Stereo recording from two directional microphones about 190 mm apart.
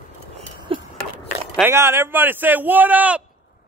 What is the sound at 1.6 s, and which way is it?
Speech, 15° right (ahead or behind).